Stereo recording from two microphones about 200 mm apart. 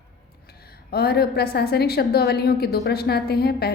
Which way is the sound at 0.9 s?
50° left (ahead or behind).